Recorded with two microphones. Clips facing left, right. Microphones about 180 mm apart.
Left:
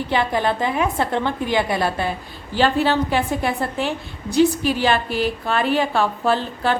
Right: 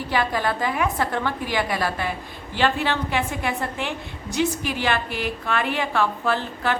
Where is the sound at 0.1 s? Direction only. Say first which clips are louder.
Left 3 dB; 25° left (ahead or behind).